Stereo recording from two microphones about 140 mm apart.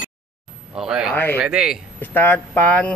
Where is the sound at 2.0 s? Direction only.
10° left (ahead or behind).